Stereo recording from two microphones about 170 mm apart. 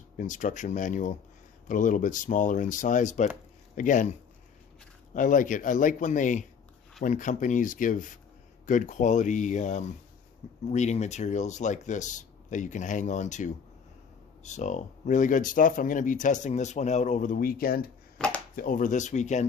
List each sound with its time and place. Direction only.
0.2 s speech: 50° left (ahead or behind)
5.1 s speech: 50° left (ahead or behind)
18.2 s a sound: 5° left (ahead or behind)
18.5 s speech: 55° left (ahead or behind)